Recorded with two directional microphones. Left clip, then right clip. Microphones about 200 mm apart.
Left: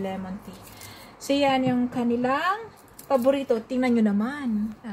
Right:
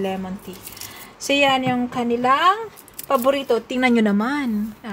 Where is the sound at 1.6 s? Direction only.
35° right (ahead or behind).